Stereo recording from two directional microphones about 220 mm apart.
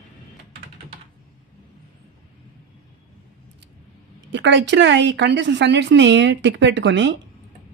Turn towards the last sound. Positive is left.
turn(degrees=-50)  # may be behind; listen again after turning